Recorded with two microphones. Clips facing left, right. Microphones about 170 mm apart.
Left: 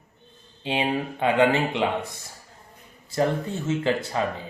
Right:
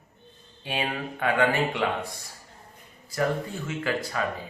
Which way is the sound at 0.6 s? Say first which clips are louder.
Left 5 dB; 20° left (ahead or behind).